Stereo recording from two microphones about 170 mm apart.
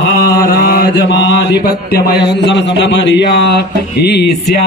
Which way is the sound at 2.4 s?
90° left.